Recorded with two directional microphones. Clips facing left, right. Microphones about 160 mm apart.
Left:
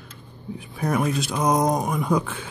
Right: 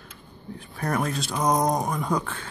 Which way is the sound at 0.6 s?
5° left (ahead or behind).